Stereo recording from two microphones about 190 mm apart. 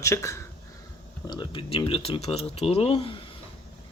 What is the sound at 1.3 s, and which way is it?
Speech, 25° left (ahead or behind).